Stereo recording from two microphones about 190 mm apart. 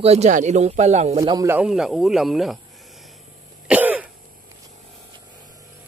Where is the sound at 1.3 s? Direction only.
15° right (ahead or behind).